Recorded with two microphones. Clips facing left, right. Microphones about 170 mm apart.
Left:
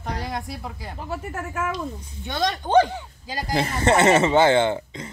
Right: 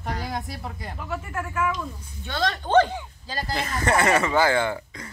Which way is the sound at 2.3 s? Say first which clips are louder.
Left 1 dB; 15° left (ahead or behind).